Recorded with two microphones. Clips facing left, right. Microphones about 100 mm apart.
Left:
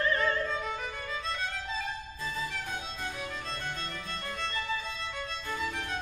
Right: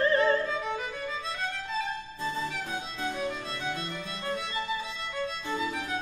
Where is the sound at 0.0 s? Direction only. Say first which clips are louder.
Right 5 dB; 30° right (ahead or behind).